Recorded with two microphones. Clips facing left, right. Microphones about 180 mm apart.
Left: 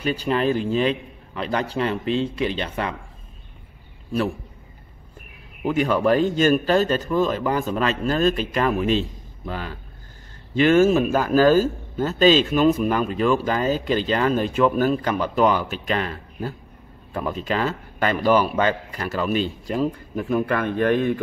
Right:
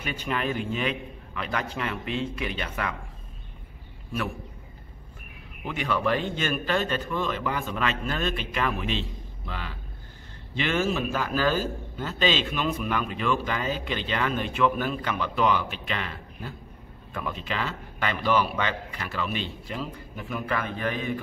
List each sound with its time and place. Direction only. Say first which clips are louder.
0.0 s a man's voice: left 8 dB; 35° left (ahead or behind)
5.6 s a man's voice: left 8 dB; 40° left (ahead or behind)